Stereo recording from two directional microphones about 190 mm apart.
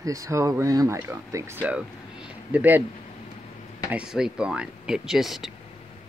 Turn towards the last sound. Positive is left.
turn(degrees=0)  # may be behind; listen again after turning